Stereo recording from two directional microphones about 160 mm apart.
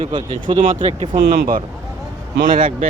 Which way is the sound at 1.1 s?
75° right (ahead or behind).